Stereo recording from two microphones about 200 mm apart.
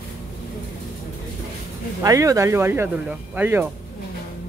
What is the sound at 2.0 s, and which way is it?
Speech, 15° right (ahead or behind).